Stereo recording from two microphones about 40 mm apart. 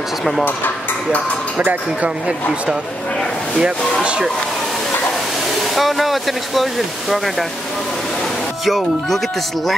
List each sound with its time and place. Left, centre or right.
0.2 s speech: centre
1.6 s speech: right
2.0 s speech: right
4.0 s a sound: right
5.8 s speech: centre
8.6 s speech: centre